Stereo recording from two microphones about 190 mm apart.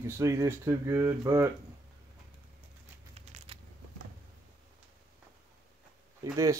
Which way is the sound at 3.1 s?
30° right (ahead or behind).